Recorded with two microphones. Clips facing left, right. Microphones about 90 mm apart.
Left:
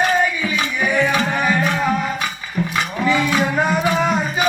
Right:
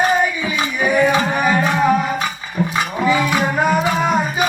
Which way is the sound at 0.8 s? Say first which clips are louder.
Right 3 dB; 10° right (ahead or behind).